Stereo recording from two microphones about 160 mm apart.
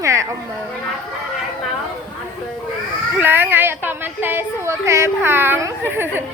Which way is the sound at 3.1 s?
15° right (ahead or behind).